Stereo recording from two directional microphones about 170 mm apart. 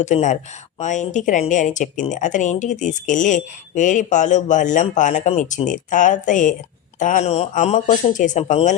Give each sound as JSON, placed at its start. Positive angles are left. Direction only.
{"t": 0.0, "sound": "speech", "side_deg": 45}